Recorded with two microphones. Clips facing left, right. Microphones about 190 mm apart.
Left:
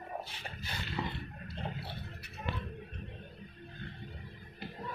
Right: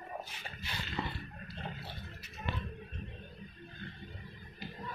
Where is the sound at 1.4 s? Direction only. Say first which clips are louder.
Left 3 dB; 65° left (ahead or behind).